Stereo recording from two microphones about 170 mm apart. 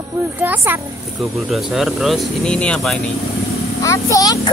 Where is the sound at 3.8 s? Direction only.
20° left (ahead or behind).